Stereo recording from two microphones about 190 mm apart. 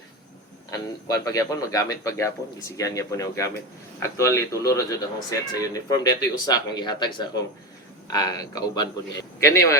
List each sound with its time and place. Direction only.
1.0 s a man's voice: 20° left (ahead or behind)